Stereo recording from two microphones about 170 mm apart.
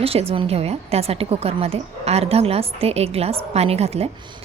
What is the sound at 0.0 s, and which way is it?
A woman's voice, 35° right (ahead or behind).